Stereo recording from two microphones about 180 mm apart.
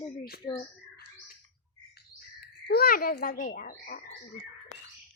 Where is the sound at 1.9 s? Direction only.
60° left (ahead or behind).